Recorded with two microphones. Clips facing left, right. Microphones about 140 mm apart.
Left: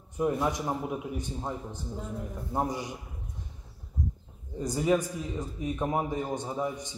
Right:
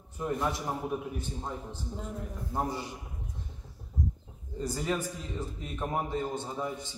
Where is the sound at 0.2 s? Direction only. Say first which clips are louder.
Left 4 dB; 15° left (ahead or behind).